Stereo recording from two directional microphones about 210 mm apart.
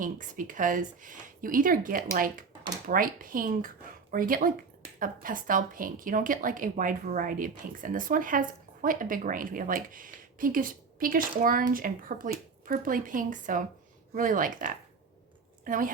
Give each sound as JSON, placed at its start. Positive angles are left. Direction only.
{"t": 0.0, "sound": "a woman's voice", "side_deg": -40}